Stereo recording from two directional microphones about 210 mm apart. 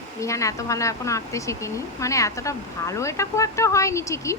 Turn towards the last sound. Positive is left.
turn(degrees=15)  # may be behind; listen again after turning